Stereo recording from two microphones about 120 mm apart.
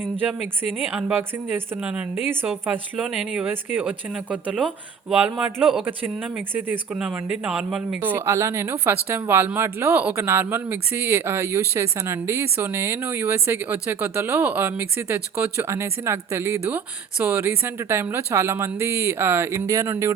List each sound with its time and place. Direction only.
0.9 s speech: 15° right (ahead or behind)
4.5 s speech: centre (ahead or behind)
5.8 s speech: 15° right (ahead or behind)